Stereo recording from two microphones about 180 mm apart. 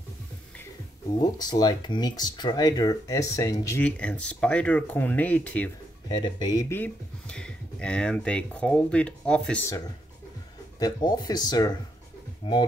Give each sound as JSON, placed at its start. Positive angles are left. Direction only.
{"t": 1.4, "sound": "speech", "side_deg": 20}
{"t": 6.0, "sound": "speech", "side_deg": 25}
{"t": 10.8, "sound": "speech", "side_deg": 20}